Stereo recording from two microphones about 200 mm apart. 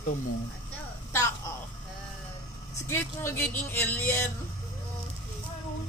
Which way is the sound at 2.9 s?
10° left (ahead or behind).